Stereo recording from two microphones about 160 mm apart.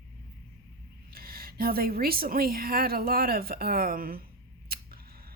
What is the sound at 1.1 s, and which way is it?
A woman's voice, 70° right (ahead or behind).